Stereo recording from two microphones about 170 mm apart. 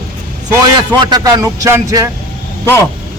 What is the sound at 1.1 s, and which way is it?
Speech, 25° right (ahead or behind).